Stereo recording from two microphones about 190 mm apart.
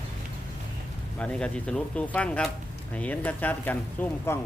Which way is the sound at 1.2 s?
5° left (ahead or behind).